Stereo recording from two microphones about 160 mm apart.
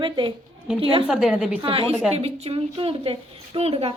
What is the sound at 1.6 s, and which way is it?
A woman's voice, 35° right (ahead or behind).